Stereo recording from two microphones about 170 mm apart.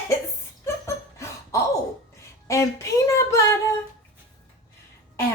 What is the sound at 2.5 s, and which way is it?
Speech, 20° left (ahead or behind).